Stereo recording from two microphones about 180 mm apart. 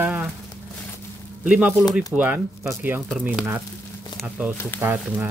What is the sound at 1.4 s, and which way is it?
Speech, 10° right (ahead or behind).